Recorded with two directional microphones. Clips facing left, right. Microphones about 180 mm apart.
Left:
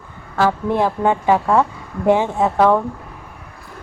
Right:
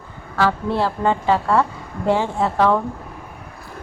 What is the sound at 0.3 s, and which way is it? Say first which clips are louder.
A woman's voice: left 2 dB; 15° left (ahead or behind).